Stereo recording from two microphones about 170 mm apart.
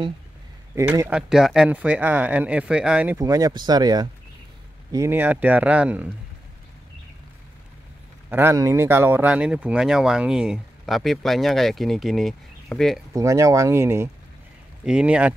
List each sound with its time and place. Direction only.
0.7 s speech: 15° right (ahead or behind)
3.2 s speech: 20° right (ahead or behind)
8.3 s speech: 15° right (ahead or behind); by 13.0 s centre (ahead or behind)
13.1 s speech: 20° right (ahead or behind)